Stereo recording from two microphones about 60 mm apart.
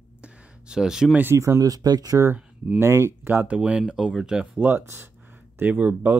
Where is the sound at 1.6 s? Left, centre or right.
Right.